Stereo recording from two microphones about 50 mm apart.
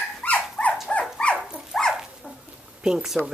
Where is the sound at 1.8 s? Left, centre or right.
Centre.